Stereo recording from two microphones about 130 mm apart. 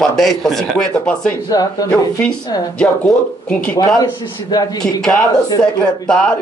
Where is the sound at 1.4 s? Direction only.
30° left (ahead or behind).